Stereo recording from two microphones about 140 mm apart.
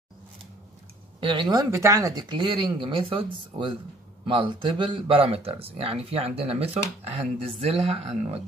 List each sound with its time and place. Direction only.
1.2 s speech: 35° right (ahead or behind)
4.3 s speech: 35° right (ahead or behind)